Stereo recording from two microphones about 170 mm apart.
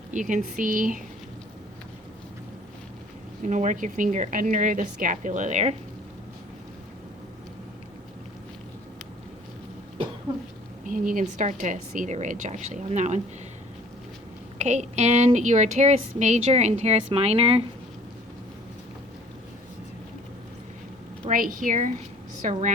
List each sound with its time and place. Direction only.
0.1 s a woman's voice: 50° right (ahead or behind)
3.4 s a woman's voice: 45° right (ahead or behind)
10.8 s a woman's voice: 50° right (ahead or behind)
14.6 s a woman's voice: 45° right (ahead or behind)
21.2 s a woman's voice: 55° right (ahead or behind)